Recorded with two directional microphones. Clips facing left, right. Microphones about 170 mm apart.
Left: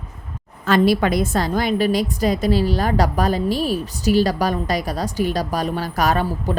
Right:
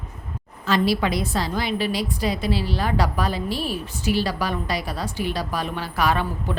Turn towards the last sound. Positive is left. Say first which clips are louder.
# left 3 dB
turn(degrees=40)  # may be behind; listen again after turning